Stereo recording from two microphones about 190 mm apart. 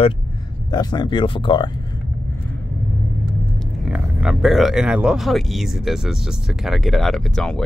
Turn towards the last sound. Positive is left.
turn(degrees=5)  # may be behind; listen again after turning